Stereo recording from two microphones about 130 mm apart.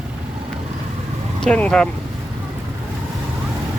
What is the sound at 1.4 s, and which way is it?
Speech, 10° left (ahead or behind).